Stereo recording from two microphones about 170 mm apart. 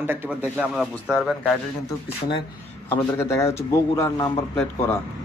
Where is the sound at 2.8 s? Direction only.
15° left (ahead or behind).